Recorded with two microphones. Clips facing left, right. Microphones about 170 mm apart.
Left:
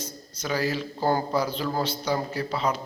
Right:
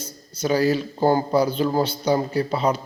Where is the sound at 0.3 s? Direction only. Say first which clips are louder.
Right 7 dB; 30° right (ahead or behind).